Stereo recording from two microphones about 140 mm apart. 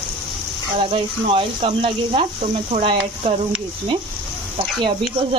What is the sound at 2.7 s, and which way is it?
Speech, 55° right (ahead or behind).